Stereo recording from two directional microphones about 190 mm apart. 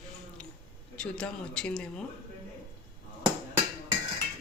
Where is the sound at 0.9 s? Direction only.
5° left (ahead or behind).